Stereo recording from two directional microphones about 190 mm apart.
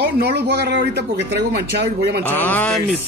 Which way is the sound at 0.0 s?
60° right (ahead or behind).